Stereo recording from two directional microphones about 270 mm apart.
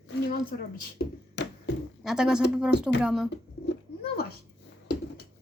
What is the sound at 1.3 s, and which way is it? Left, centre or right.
Hands, left.